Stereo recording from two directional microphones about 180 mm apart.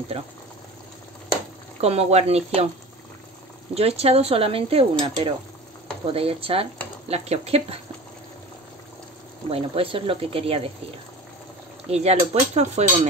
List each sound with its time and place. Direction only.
1.8 s speech: 35° right (ahead or behind)
3.7 s speech: 35° right (ahead or behind)
9.5 s speech: 30° right (ahead or behind)
11.9 s speech: 35° right (ahead or behind)